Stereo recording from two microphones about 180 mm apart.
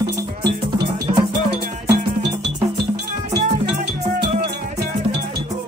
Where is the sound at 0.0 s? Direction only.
65° right (ahead or behind).